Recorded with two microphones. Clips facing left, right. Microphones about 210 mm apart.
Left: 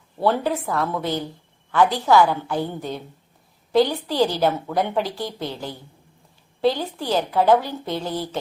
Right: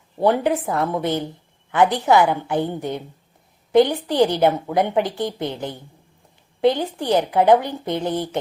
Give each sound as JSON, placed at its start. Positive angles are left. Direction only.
{"t": 0.2, "sound": "a woman's voice", "side_deg": -20}